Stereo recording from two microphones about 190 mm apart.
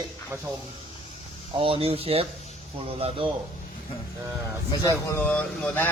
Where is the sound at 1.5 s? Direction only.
30° right (ahead or behind).